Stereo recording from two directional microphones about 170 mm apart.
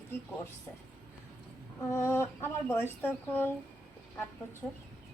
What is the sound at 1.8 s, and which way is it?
Speech, 15° left (ahead or behind).